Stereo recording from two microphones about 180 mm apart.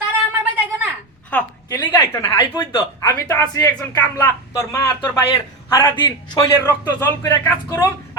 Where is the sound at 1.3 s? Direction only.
10° left (ahead or behind).